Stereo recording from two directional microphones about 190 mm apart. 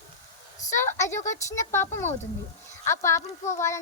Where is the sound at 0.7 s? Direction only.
15° left (ahead or behind).